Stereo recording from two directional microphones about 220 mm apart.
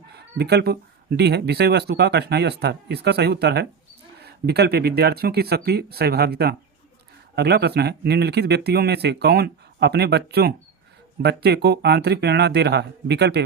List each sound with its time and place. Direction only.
0.1 s speech: 45° right (ahead or behind)